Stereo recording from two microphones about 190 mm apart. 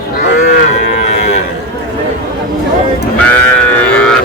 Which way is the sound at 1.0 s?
35° left (ahead or behind).